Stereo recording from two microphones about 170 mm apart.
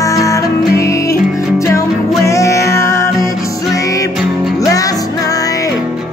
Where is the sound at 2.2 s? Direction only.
20° left (ahead or behind).